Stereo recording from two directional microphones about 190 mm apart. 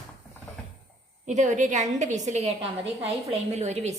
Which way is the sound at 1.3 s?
40° right (ahead or behind).